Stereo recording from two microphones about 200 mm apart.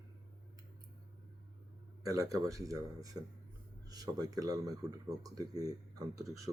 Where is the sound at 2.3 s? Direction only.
15° right (ahead or behind).